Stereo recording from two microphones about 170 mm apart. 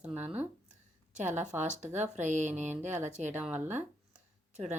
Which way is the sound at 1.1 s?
45° right (ahead or behind).